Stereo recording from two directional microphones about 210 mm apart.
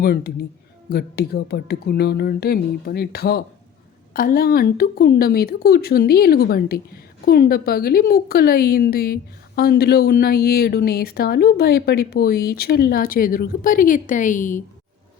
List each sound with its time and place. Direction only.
0.0 s speech: 45° left (ahead or behind)